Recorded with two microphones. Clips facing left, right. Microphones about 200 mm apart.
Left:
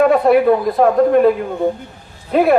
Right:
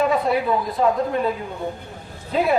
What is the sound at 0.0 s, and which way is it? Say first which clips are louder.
A man's voice: left 9 dB; 60° left (ahead or behind).